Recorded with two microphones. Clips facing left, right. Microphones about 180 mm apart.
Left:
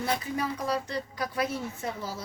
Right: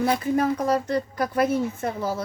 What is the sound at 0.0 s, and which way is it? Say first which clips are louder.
A woman's voice: right 8 dB; 50° right (ahead or behind).